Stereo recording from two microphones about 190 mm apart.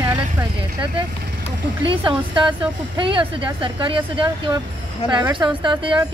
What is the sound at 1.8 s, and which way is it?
Speech, 25° right (ahead or behind).